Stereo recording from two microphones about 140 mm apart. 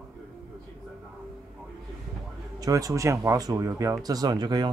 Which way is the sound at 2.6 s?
25° right (ahead or behind).